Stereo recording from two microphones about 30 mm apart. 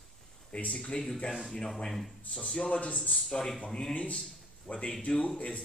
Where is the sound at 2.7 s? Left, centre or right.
Left.